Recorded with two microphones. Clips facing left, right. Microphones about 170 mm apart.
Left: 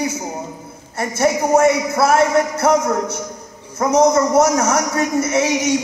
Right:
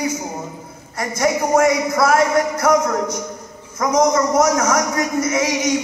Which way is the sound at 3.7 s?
30° left (ahead or behind).